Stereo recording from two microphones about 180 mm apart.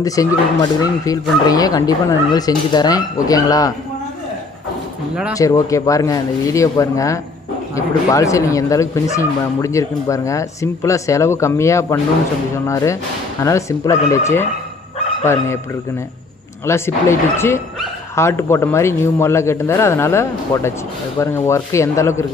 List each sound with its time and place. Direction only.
0.0 s speech: 20° left (ahead or behind)
5.4 s speech: 20° left (ahead or behind)
16.6 s speech: 15° left (ahead or behind)